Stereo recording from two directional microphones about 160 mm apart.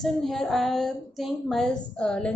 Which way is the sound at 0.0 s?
5° left (ahead or behind).